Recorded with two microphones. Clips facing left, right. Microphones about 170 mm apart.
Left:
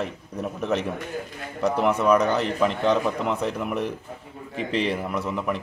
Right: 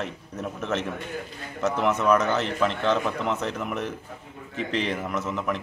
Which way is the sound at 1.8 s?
10° left (ahead or behind).